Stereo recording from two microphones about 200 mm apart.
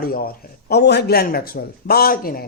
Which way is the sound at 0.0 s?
45° left (ahead or behind).